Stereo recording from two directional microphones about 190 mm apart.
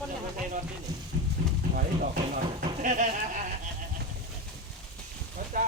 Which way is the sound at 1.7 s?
50° right (ahead or behind).